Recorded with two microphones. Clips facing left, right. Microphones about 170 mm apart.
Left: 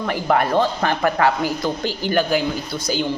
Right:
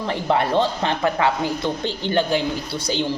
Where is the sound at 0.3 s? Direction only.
25° right (ahead or behind).